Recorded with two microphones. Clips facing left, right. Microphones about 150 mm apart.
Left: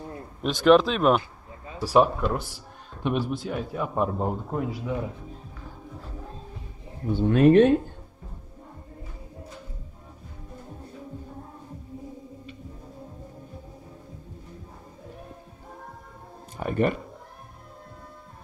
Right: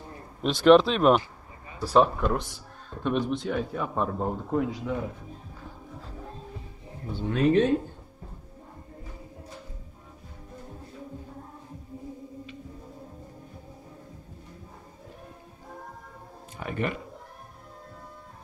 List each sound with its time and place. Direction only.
0.4 s a man's voice: centre (ahead or behind)
7.2 s speech: 55° left (ahead or behind)
16.5 s speech: 40° left (ahead or behind)